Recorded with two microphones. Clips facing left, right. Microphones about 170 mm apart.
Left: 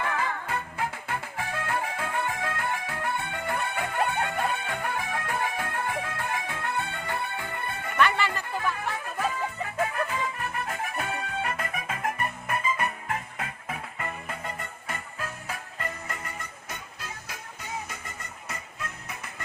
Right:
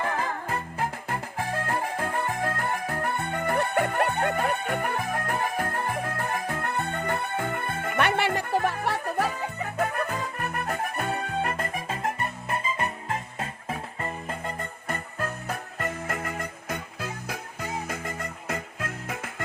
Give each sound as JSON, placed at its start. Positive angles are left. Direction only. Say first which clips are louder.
{"t": 0.0, "sound": "music", "louder": "right 1 dB", "side_deg": -35}
{"t": 3.6, "sound": "music", "louder": "right 5 dB", "side_deg": -60}
{"t": 9.6, "sound": "music", "louder": "right 2 dB", "side_deg": -40}
{"t": 14.8, "sound": "music", "louder": "right 5 dB", "side_deg": -50}
{"t": 18.0, "sound": "music", "louder": "right 8 dB", "side_deg": -90}
{"t": 18.8, "sound": "music", "louder": "right 5 dB", "side_deg": -50}